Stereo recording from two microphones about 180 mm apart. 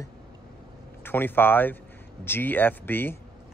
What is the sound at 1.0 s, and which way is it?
Speech, 10° left (ahead or behind).